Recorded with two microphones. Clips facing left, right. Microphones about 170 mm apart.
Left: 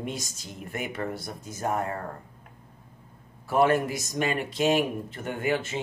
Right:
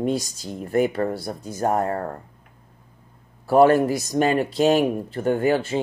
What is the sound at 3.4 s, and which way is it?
Speech, 35° right (ahead or behind).